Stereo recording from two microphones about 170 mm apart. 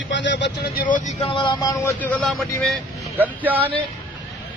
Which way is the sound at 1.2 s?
30° left (ahead or behind).